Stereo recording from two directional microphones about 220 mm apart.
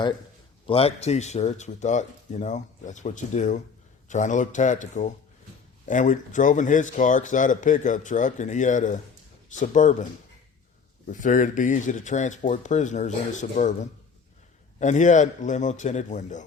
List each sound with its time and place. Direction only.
0.7 s speech: 25° left (ahead or behind)
11.1 s speech: 35° left (ahead or behind)
14.8 s speech: 35° left (ahead or behind)